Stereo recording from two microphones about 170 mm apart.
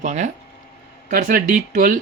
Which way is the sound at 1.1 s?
60° right (ahead or behind).